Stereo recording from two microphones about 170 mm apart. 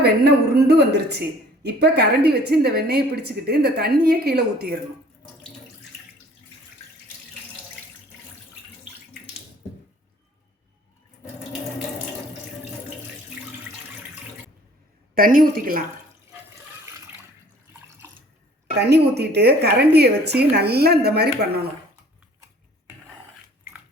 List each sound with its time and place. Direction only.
0.0 s a woman's voice: 70° right (ahead or behind)
15.1 s a woman's voice: 55° right (ahead or behind)
18.8 s a woman's voice: 75° right (ahead or behind)